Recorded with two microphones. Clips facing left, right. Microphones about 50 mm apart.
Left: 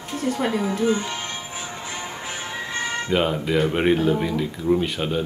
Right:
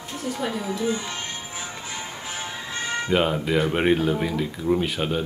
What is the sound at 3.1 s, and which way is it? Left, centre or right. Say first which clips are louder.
Speech: even; centre.